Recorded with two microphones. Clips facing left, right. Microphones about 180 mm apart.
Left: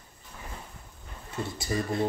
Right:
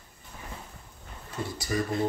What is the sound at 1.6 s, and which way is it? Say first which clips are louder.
Speech: right 1 dB; 25° left (ahead or behind).